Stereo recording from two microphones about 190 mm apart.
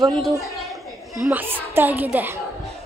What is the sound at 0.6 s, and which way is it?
A woman's voice, centre (ahead or behind).